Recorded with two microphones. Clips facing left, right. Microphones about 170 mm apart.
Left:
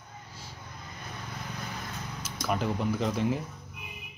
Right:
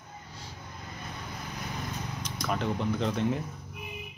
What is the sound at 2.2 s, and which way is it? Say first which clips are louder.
Speech: left 2 dB; 5° left (ahead or behind).